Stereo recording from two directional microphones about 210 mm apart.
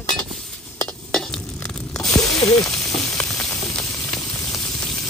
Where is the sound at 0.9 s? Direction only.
5° left (ahead or behind).